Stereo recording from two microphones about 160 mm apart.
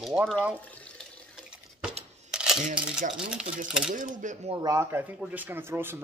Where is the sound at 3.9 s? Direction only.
50° right (ahead or behind).